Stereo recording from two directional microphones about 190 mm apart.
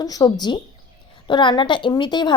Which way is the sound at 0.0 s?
20° left (ahead or behind).